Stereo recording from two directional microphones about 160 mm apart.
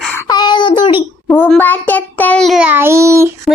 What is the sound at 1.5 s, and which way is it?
Child singing, 10° left (ahead or behind).